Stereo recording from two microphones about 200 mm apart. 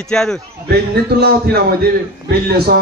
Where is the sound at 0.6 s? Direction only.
55° right (ahead or behind).